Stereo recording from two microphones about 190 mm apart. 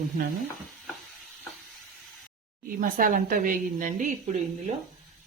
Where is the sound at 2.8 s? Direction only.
45° right (ahead or behind).